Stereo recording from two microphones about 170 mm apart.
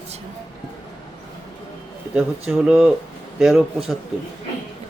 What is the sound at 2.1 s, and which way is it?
Speech, 10° right (ahead or behind).